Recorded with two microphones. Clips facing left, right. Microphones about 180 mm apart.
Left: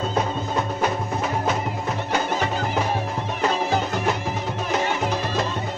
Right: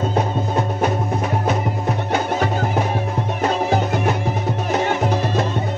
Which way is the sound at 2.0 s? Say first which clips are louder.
Right 3 dB; 55° right (ahead or behind).